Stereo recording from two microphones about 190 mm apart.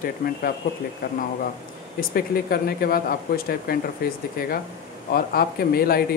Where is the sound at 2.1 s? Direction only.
55° left (ahead or behind).